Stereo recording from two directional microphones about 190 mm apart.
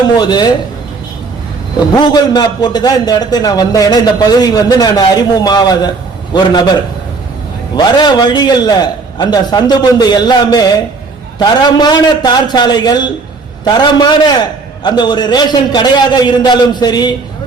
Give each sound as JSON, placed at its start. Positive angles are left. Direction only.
{"t": 0.2, "sound": "a man's voice", "side_deg": 20}
{"t": 2.0, "sound": "a man's voice", "side_deg": 20}
{"t": 7.8, "sound": "a man's voice", "side_deg": 25}